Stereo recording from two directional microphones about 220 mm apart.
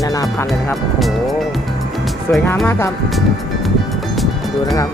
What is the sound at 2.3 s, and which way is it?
Speech, 5° left (ahead or behind).